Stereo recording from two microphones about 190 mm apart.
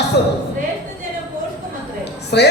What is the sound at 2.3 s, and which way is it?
Speech, 60° left (ahead or behind).